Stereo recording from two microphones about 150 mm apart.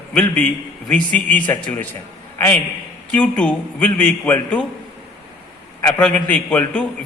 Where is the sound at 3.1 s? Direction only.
5° left (ahead or behind).